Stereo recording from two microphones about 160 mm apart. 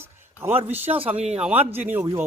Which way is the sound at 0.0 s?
15° right (ahead or behind).